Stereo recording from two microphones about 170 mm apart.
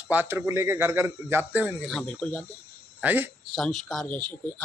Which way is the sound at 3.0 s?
10° right (ahead or behind).